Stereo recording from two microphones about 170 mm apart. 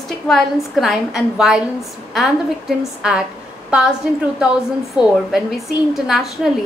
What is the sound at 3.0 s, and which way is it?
A woman's voice, 5° right (ahead or behind).